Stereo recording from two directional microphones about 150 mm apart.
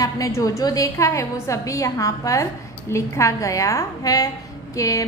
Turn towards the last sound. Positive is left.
turn(degrees=20)  # may be behind; listen again after turning